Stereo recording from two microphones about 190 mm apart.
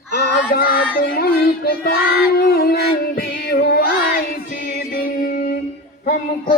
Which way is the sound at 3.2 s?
55° left (ahead or behind).